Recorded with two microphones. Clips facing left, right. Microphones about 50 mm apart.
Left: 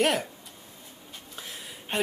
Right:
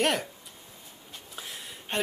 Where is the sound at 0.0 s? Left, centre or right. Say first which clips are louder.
Left 2 dB; centre.